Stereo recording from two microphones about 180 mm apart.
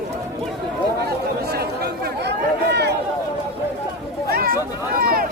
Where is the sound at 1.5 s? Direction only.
60° right (ahead or behind).